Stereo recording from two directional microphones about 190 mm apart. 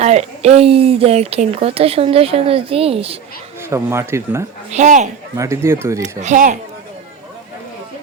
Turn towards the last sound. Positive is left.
turn(degrees=-40)  # may be behind; listen again after turning